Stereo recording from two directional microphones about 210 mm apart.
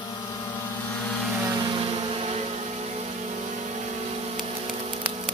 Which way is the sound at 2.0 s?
30° right (ahead or behind).